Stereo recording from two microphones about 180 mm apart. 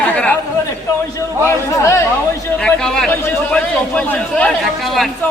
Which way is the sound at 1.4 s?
15° left (ahead or behind).